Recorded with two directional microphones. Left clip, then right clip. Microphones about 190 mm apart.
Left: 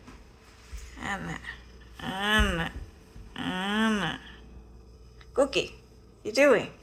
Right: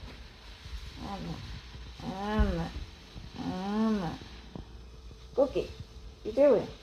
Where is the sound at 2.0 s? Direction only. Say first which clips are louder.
Left 8 dB; 40° left (ahead or behind).